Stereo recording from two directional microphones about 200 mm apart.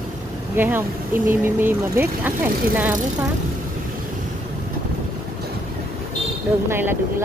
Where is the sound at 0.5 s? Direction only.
10° right (ahead or behind).